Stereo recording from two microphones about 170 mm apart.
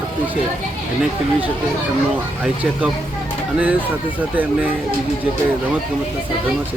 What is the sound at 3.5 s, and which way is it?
Speech, 10° right (ahead or behind).